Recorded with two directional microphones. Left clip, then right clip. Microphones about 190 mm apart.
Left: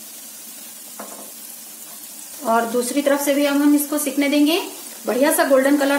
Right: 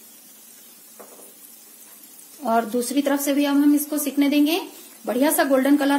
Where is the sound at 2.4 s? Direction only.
50° right (ahead or behind).